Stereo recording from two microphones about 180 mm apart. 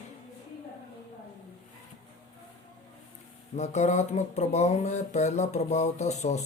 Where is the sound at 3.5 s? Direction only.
40° left (ahead or behind).